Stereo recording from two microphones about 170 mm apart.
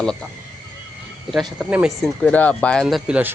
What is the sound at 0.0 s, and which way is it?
Speech, 5° left (ahead or behind).